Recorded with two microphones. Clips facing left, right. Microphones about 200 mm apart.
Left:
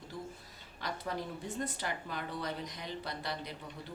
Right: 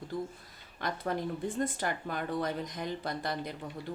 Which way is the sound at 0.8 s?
55° right (ahead or behind).